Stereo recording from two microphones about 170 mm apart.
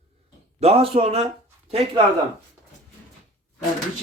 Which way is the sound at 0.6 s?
35° right (ahead or behind).